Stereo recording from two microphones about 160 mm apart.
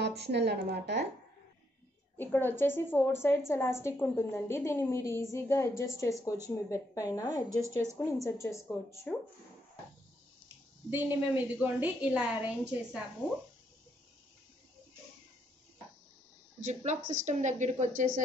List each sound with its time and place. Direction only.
0.0 s a woman's voice: 90° right
2.1 s a woman's voice: 15° left (ahead or behind)
10.9 s a woman's voice: 10° right (ahead or behind)
16.6 s a woman's voice: 50° right (ahead or behind)